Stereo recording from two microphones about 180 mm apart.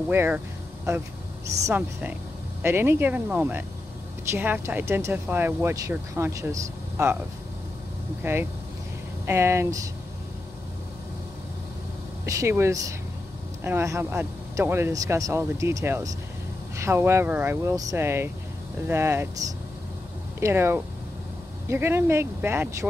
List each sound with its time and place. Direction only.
0.1 s speech: 10° right (ahead or behind)
1.8 s speech: 10° right (ahead or behind)
8.2 s speech: 10° right (ahead or behind)
12.3 s speech: 15° right (ahead or behind)
20.3 s speech: 15° right (ahead or behind)